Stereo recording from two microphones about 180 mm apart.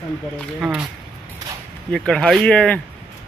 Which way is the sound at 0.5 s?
5° right (ahead or behind).